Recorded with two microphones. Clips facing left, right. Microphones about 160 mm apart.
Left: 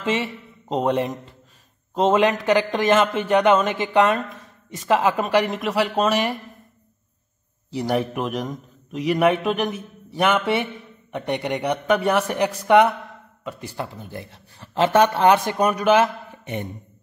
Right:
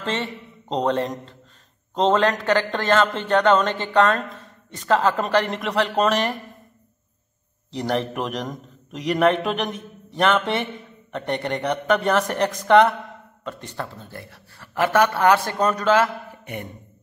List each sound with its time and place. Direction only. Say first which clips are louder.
0.0 s a man's voice: left 3 dB; 10° left (ahead or behind)
7.7 s a man's voice: left 1 dB; 10° left (ahead or behind)